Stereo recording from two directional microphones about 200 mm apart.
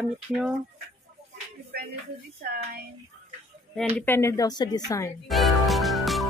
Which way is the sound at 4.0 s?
10° left (ahead or behind).